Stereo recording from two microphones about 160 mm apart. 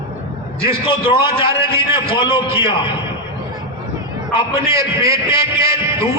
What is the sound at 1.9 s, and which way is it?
Speech, 30° left (ahead or behind).